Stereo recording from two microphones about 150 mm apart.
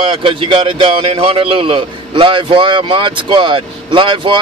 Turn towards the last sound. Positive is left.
turn(degrees=-35)  # may be behind; listen again after turning